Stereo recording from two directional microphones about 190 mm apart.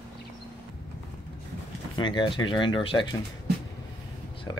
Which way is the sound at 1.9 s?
25° left (ahead or behind).